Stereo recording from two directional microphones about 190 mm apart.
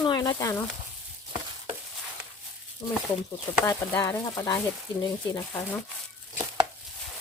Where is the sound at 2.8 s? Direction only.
20° left (ahead or behind).